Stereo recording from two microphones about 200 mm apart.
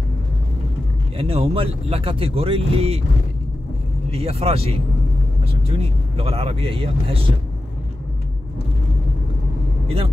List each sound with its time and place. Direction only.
1.1 s speech: 30° right (ahead or behind)
4.1 s speech: 30° right (ahead or behind)